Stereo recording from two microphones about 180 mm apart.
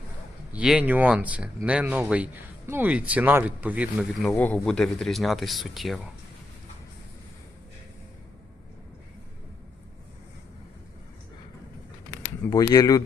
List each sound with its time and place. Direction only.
0.5 s speech: 5° right (ahead or behind)
12.5 s speech: 20° left (ahead or behind)